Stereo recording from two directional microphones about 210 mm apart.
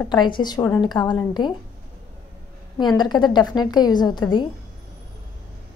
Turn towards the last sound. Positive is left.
turn(degrees=20)  # may be behind; listen again after turning